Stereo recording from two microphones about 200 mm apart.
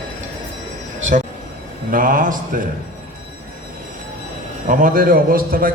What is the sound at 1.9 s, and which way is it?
Speech, 40° right (ahead or behind).